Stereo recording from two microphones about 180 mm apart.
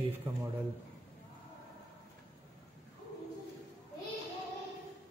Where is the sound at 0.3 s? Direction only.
25° right (ahead or behind).